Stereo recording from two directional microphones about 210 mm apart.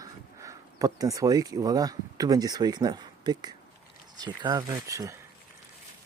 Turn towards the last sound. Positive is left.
turn(degrees=-15)  # may be behind; listen again after turning